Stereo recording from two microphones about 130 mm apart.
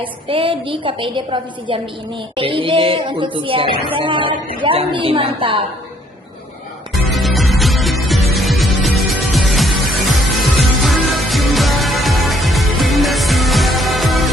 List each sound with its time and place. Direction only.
0.0 s speech: 45° right (ahead or behind)
6.9 s music: centre (ahead or behind)